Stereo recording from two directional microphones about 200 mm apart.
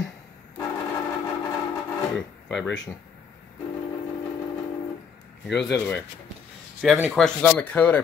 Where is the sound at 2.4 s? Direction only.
Centre (ahead or behind).